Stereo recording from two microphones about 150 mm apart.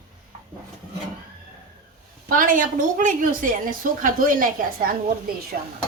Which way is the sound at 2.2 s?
65° right (ahead or behind).